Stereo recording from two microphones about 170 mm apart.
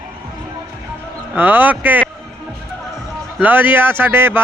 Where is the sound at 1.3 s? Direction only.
10° right (ahead or behind).